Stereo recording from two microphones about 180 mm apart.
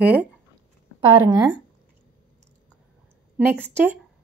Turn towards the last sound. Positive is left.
turn(degrees=-10)  # may be behind; listen again after turning